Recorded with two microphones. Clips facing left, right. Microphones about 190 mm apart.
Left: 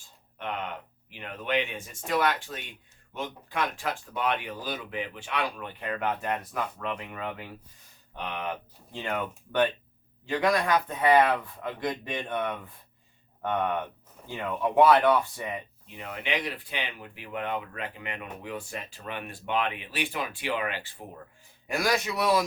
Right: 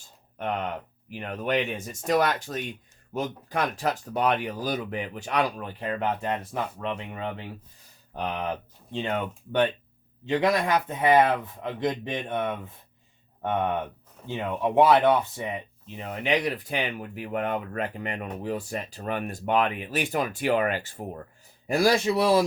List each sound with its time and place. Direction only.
0.3 s speech: 40° right (ahead or behind); by 7.4 s 25° right (ahead or behind)
8.1 s speech: 40° right (ahead or behind)
8.9 s speech: 25° right (ahead or behind); by 21.0 s 45° right (ahead or behind)
21.7 s speech: 30° right (ahead or behind)